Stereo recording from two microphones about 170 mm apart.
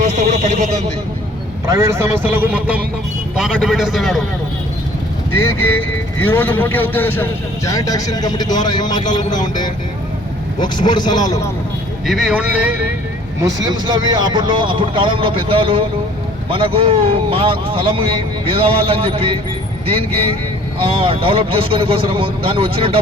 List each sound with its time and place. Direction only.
0.0 s a sound: 45° right (ahead or behind)
1.6 s a man's voice: 15° right (ahead or behind); by 4.2 s centre (ahead or behind)
5.3 s speech: 15° left (ahead or behind)
12.0 s a man's voice: 5° right (ahead or behind)
13.4 s a man's voice: 25° right (ahead or behind)
20.8 s a man's voice: 30° right (ahead or behind)